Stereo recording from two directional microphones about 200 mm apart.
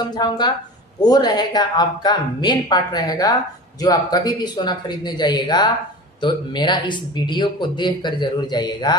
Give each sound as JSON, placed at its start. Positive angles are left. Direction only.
{"t": 0.1, "sound": "speech", "side_deg": 20}